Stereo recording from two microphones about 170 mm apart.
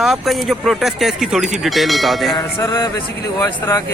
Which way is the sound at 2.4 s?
20° left (ahead or behind).